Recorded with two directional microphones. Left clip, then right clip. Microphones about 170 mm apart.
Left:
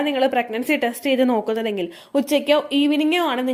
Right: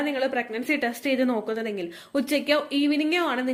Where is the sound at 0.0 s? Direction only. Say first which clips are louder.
Left 6 dB; 25° left (ahead or behind).